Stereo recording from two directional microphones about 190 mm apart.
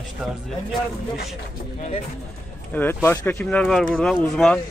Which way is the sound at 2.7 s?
10° left (ahead or behind).